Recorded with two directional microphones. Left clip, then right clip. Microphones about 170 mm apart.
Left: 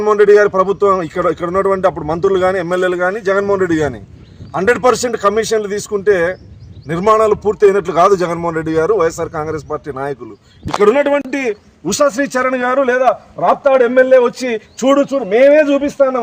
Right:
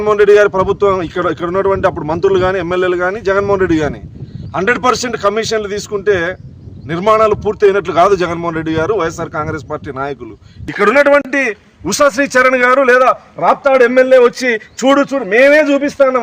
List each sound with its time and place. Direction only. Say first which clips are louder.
0.3 s speech: right 1 dB; 25° right (ahead or behind)
10.8 s a man's voice: right 3 dB; centre (ahead or behind)